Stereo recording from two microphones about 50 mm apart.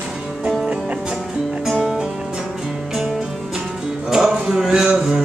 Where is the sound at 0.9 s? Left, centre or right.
Right.